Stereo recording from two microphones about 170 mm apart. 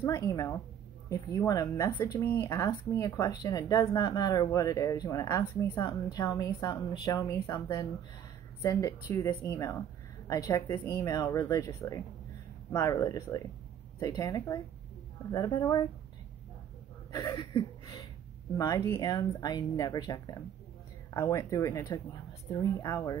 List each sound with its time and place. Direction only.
0.0 s speech: 20° left (ahead or behind)
9.1 s speech: 15° left (ahead or behind)
17.1 s a sound: 25° left (ahead or behind)
18.5 s speech: 20° left (ahead or behind)